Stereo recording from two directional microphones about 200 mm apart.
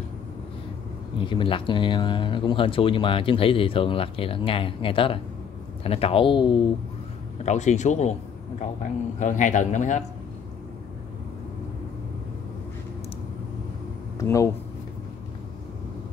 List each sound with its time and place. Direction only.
1.3 s speech: 25° left (ahead or behind)
7.4 s a man's voice: 35° left (ahead or behind)
9.2 s a man's voice: 40° left (ahead or behind)
14.1 s speech: 15° left (ahead or behind)